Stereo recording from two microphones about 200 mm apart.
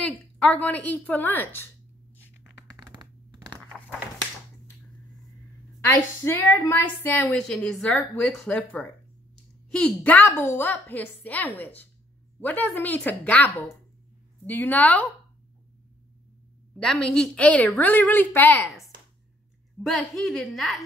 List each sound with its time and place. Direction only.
0.0 s a woman's voice: 5° left (ahead or behind)
2.4 s scratch: 15° right (ahead or behind)
5.9 s a woman's voice: 10° left (ahead or behind)
16.7 s a woman's voice: 5° left (ahead or behind)